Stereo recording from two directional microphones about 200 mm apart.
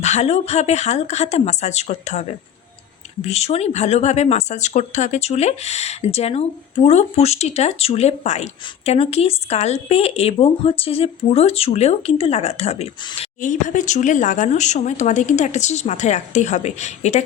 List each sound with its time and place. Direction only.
0.0 s speech: 35° left (ahead or behind)